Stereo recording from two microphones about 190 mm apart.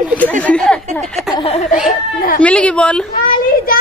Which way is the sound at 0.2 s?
10° left (ahead or behind).